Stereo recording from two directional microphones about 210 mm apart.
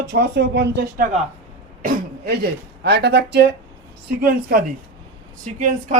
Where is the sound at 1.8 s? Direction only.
40° right (ahead or behind).